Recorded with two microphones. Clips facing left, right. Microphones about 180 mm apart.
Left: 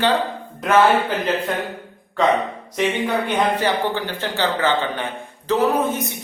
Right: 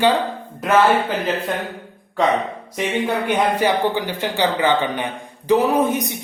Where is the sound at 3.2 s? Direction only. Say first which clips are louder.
Right 3 dB; 10° right (ahead or behind).